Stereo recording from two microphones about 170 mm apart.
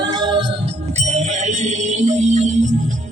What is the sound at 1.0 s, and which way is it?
Music, 40° right (ahead or behind).